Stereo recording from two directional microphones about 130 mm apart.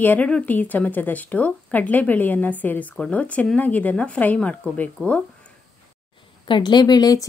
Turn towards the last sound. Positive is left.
turn(degrees=30)  # may be behind; listen again after turning